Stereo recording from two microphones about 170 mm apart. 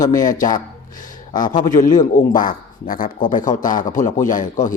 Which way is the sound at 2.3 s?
55° left (ahead or behind).